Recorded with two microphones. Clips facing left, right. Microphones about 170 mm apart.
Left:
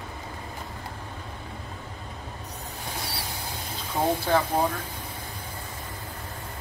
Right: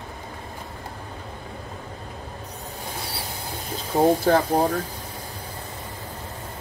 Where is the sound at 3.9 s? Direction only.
40° right (ahead or behind).